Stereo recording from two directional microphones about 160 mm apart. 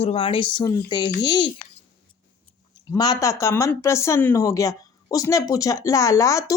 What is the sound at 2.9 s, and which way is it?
Speech, 25° left (ahead or behind).